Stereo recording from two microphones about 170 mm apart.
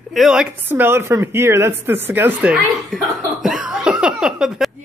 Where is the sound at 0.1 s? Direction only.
Centre (ahead or behind).